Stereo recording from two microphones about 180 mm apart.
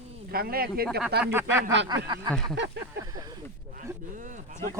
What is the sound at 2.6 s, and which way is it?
Speech, 75° right (ahead or behind).